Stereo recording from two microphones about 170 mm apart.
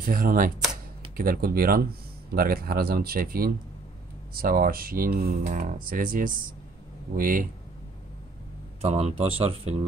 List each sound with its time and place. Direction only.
0.0 s speech: 60° right (ahead or behind)
8.8 s speech: 35° right (ahead or behind)